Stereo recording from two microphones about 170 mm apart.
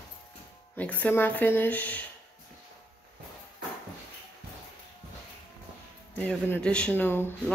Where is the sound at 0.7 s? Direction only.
10° left (ahead or behind).